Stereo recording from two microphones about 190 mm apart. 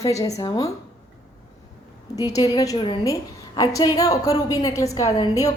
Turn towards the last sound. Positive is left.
turn(degrees=20)  # may be behind; listen again after turning